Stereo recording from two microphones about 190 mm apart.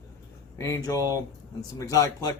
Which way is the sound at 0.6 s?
20° left (ahead or behind).